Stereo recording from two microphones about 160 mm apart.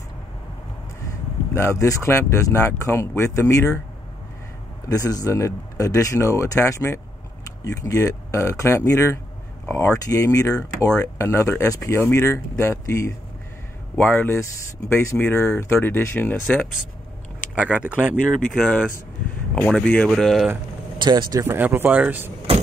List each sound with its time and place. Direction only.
1.5 s speech: 20° left (ahead or behind)
4.8 s speech: 25° left (ahead or behind)
16.4 s speech: centre (ahead or behind)
18.5 s speech: 5° left (ahead or behind)
21.0 s speech: 25° right (ahead or behind); by 22.3 s 10° right (ahead or behind)